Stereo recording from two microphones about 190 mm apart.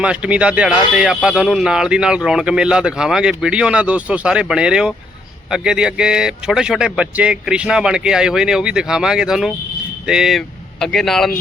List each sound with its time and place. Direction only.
0.0 s speech: 5° right (ahead or behind)